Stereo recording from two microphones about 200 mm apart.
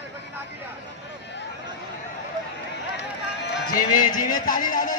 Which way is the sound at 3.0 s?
60° left (ahead or behind).